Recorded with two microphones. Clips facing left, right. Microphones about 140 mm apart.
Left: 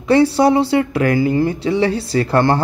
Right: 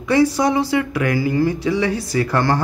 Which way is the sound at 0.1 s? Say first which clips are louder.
Left 4 dB; 30° left (ahead or behind).